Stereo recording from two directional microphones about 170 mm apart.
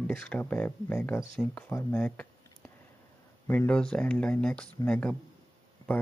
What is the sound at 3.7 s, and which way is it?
Speech, 5° left (ahead or behind).